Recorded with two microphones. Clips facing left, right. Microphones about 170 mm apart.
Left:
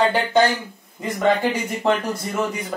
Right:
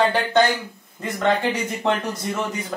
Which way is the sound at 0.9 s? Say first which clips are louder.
Left 2 dB; 15° left (ahead or behind).